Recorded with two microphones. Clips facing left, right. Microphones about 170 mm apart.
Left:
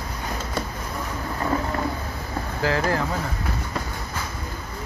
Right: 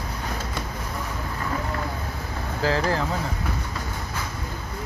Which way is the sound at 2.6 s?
30° right (ahead or behind).